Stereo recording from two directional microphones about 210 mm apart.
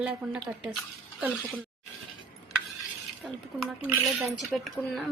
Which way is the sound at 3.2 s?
Centre (ahead or behind).